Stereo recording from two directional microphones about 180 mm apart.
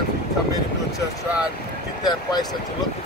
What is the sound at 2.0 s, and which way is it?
Speech, 20° left (ahead or behind).